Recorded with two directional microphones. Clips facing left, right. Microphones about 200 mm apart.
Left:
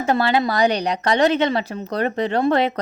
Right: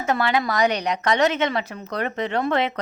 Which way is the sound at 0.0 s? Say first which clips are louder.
Left 3 dB; 30° left (ahead or behind).